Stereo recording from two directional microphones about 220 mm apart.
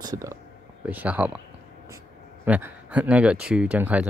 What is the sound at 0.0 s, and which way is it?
Speech, 15° right (ahead or behind).